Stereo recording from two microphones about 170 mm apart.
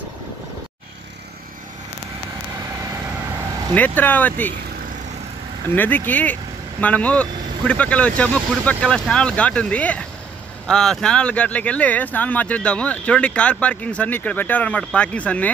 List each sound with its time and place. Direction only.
3.7 s speech: 10° left (ahead or behind)
5.8 s speech: 10° left (ahead or behind)